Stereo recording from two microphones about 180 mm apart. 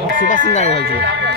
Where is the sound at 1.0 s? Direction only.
80° right.